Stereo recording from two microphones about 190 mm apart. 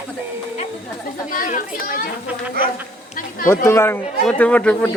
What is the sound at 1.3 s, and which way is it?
Speech, 45° left (ahead or behind).